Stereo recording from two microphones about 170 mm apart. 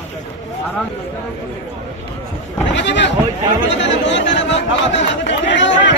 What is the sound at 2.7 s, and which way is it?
Speech, 90° left.